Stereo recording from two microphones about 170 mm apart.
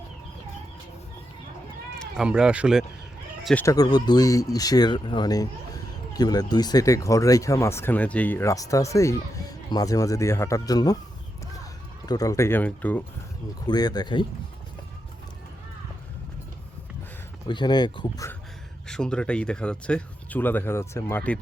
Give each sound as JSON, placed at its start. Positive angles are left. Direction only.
{"t": 2.0, "sound": "speech", "side_deg": -5}
{"t": 3.4, "sound": "speech", "side_deg": 10}
{"t": 3.8, "sound": "speech", "side_deg": 25}
{"t": 12.0, "sound": "speech", "side_deg": 20}
{"t": 13.7, "sound": "speech", "side_deg": 25}
{"t": 17.5, "sound": "speech", "side_deg": 25}
{"t": 18.9, "sound": "speech", "side_deg": 5}